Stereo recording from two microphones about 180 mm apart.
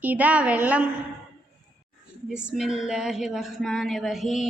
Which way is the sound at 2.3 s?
5° right (ahead or behind).